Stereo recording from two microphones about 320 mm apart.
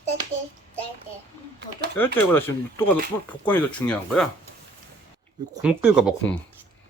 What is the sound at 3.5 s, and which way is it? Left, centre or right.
Speech, centre.